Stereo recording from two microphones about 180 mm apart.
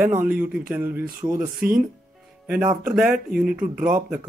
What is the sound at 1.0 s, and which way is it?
Speech, 50° right (ahead or behind).